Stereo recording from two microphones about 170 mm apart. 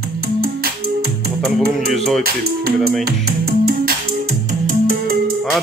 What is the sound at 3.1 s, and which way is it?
Music, 65° right (ahead or behind).